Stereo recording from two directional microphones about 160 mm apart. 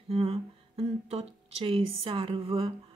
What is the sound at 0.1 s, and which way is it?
Speech, 35° right (ahead or behind).